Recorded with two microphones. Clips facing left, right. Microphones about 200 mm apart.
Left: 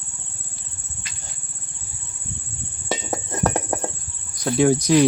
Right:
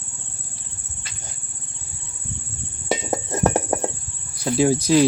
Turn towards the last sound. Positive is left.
turn(degrees=-5)  # may be behind; listen again after turning